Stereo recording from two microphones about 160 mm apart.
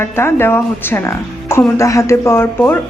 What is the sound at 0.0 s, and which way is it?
Speech, 15° left (ahead or behind).